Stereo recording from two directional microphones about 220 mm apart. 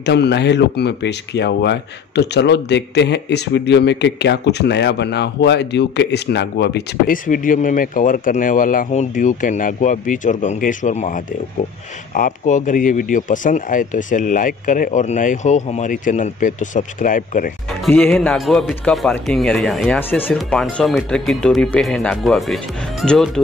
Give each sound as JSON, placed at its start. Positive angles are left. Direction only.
{"t": 0.0, "sound": "a man's voice", "side_deg": 50}
{"t": 17.8, "sound": "speech", "side_deg": 5}